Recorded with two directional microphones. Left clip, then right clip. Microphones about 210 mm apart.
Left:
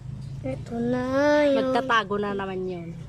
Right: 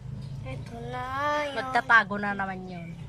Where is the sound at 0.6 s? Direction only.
25° left (ahead or behind).